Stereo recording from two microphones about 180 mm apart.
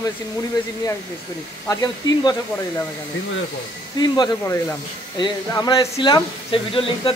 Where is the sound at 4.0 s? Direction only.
20° left (ahead or behind).